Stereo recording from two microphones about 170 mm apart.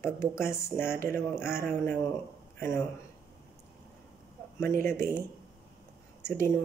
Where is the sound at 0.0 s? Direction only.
15° left (ahead or behind).